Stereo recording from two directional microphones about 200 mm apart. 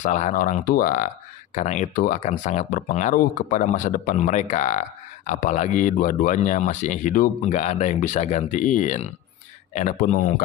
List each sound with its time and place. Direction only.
0.0 s speech: 40° left (ahead or behind)